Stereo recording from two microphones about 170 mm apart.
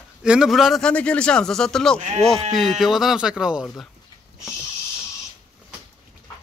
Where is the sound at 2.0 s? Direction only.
45° right (ahead or behind).